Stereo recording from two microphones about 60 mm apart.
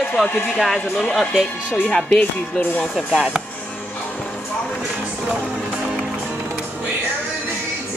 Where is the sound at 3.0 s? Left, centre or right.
Centre.